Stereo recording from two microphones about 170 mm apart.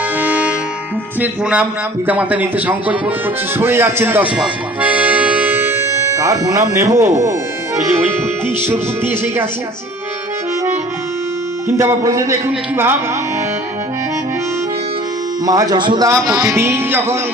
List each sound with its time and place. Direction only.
0.2 s music: 10° right (ahead or behind)
1.2 s a man's voice: 10° right (ahead or behind)
8.6 s a man's voice: 15° right (ahead or behind)
11.8 s a man's voice: 20° right (ahead or behind)
15.4 s a man's voice: 20° right (ahead or behind)